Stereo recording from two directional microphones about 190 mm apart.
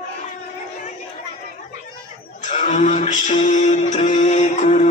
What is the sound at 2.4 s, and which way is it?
Music, 40° left (ahead or behind).